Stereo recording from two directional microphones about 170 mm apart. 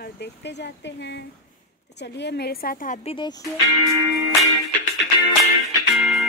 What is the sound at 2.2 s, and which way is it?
Speech, 75° left (ahead or behind).